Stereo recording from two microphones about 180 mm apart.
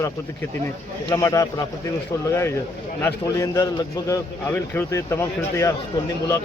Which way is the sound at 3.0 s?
20° left (ahead or behind).